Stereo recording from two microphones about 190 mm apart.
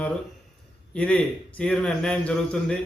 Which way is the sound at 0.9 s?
5° left (ahead or behind).